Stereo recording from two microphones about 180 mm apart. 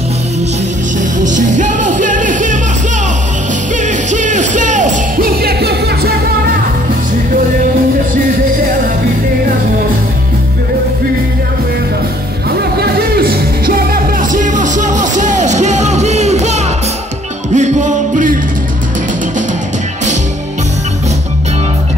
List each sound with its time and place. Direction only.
1.2 s music: 45° right (ahead or behind)
3.8 s music: 45° right (ahead or behind); by 6.1 s 65° right (ahead or behind)
12.7 s music: 60° right (ahead or behind)